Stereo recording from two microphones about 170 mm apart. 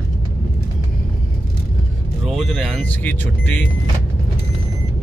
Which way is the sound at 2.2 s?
Centre (ahead or behind).